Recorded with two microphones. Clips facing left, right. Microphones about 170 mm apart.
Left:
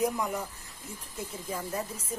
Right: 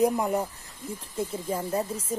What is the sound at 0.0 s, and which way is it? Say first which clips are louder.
Speech: right 6 dB; 30° right (ahead or behind).